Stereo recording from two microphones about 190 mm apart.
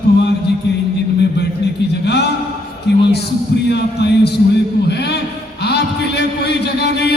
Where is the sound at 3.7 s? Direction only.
60° left (ahead or behind).